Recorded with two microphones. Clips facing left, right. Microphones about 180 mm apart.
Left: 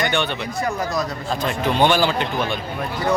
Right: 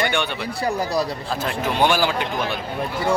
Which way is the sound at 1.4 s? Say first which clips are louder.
Left 2 dB; 5° right (ahead or behind).